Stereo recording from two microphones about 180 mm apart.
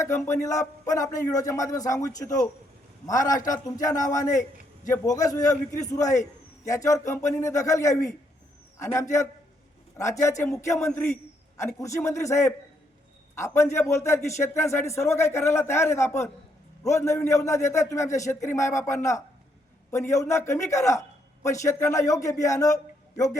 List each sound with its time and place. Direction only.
0.3 s a man's voice: 15° left (ahead or behind)